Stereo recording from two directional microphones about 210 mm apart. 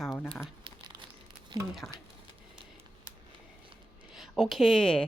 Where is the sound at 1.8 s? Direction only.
10° left (ahead or behind).